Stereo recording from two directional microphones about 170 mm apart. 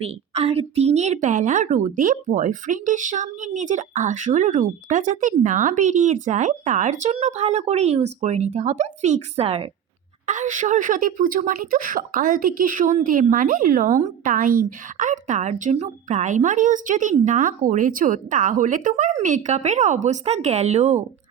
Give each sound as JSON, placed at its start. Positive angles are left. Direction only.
{"t": 0.0, "sound": "speech", "side_deg": -35}
{"t": 10.2, "sound": "speech", "side_deg": -50}